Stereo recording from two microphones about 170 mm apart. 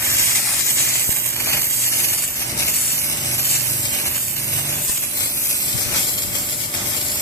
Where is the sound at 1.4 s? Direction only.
15° left (ahead or behind).